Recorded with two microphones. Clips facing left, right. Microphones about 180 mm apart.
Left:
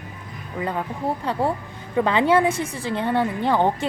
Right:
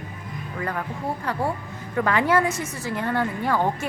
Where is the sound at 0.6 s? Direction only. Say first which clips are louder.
Left 3 dB; 20° left (ahead or behind).